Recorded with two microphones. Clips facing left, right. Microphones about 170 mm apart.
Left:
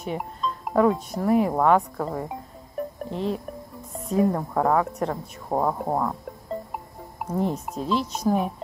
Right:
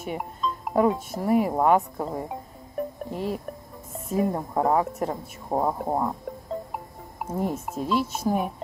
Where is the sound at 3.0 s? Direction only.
5° right (ahead or behind).